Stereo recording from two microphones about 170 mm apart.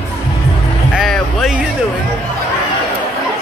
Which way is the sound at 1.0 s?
Centre (ahead or behind).